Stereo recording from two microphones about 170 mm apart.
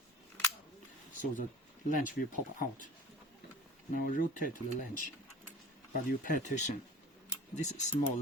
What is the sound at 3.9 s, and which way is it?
Speech, 55° left (ahead or behind).